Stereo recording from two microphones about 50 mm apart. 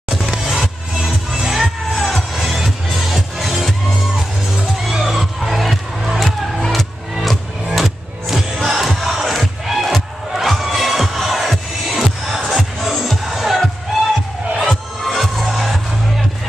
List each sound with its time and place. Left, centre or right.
0.5 s music: centre
4.9 s music: centre
8.6 s crowd: centre
12.4 s music: centre